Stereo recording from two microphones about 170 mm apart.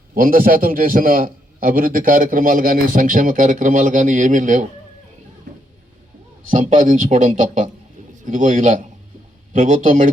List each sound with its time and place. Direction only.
0.1 s a man's voice: 55° right (ahead or behind)
6.5 s a man's voice: 50° right (ahead or behind)